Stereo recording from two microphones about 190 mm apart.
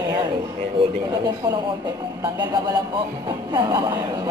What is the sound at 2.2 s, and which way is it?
Speech, 20° right (ahead or behind).